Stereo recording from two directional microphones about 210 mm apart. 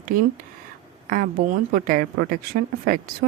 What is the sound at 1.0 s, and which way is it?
Speech, 40° right (ahead or behind).